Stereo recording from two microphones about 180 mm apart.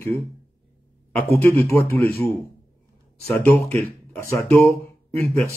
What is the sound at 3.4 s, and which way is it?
Speech, 10° left (ahead or behind).